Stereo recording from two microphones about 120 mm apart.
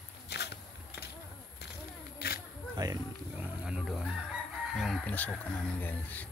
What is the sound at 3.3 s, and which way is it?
Wild animals, 10° right (ahead or behind).